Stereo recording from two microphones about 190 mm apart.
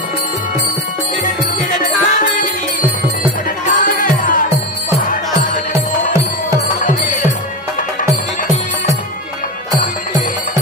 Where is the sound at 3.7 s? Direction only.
45° left (ahead or behind).